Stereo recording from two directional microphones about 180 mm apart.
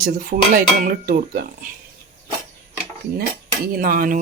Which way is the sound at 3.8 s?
50° right (ahead or behind).